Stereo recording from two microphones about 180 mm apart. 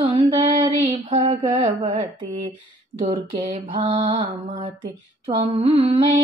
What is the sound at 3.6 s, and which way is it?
Mantra, 25° right (ahead or behind).